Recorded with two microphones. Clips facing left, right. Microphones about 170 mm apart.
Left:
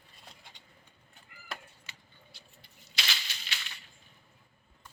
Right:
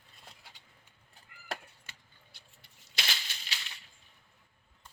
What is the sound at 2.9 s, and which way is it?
Maraca, 45° right (ahead or behind).